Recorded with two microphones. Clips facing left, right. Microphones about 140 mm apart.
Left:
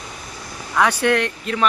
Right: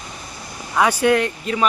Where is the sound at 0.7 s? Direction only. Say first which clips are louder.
Right 1 dB; 10° right (ahead or behind).